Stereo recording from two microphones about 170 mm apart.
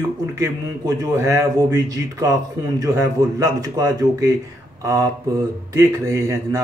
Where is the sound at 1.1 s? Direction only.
15° right (ahead or behind).